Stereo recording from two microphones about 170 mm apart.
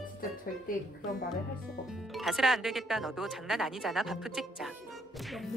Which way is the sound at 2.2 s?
Centre (ahead or behind).